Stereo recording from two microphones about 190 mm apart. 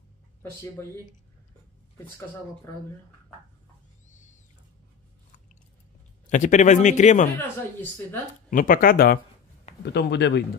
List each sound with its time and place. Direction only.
4.1 s a sound: 40° left (ahead or behind)
6.2 s a man's voice: 40° left (ahead or behind)
8.5 s speech: 45° left (ahead or behind)
9.8 s speech: 65° left (ahead or behind)